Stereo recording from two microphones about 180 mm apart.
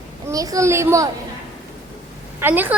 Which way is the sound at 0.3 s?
20° right (ahead or behind).